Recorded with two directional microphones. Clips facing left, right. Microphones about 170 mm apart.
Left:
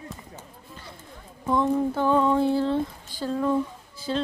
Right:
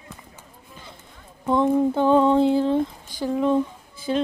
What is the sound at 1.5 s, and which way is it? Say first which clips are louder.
Female singing: right 4 dB; 25° right (ahead or behind).